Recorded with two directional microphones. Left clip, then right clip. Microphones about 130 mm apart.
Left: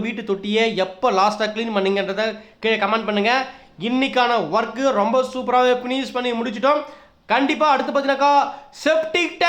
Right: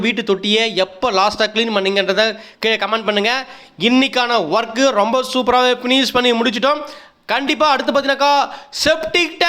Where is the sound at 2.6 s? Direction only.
40° right (ahead or behind).